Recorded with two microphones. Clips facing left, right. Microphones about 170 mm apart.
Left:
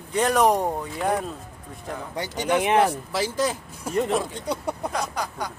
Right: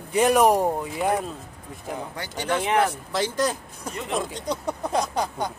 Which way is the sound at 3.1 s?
5° left (ahead or behind).